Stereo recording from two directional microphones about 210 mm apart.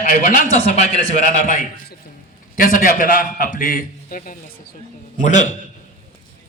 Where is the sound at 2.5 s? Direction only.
40° left (ahead or behind).